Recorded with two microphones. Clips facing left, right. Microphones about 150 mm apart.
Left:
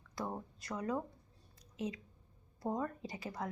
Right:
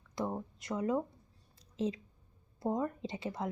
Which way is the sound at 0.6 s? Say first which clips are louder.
Right 5 dB; 20° right (ahead or behind).